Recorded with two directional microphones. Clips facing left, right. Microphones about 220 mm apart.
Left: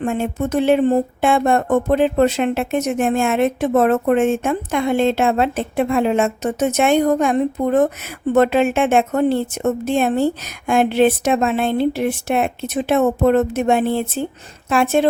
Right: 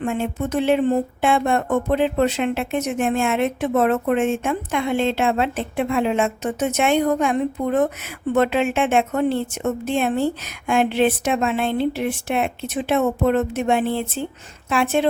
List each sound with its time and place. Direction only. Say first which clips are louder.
0.0 s speech: left 3 dB; 45° left (ahead or behind)